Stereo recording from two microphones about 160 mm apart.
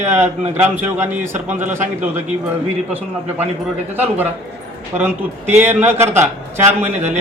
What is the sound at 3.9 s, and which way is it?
Speech, 10° right (ahead or behind).